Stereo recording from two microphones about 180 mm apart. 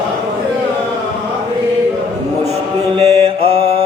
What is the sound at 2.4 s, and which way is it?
Mantra, 35° right (ahead or behind).